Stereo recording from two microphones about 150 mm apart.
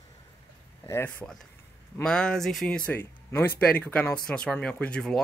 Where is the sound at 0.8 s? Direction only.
15° left (ahead or behind).